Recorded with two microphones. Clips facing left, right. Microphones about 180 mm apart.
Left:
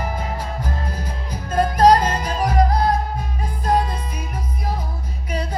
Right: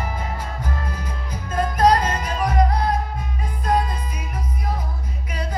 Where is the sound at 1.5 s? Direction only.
35° left (ahead or behind).